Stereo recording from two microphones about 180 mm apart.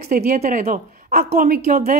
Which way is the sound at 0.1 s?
55° right (ahead or behind).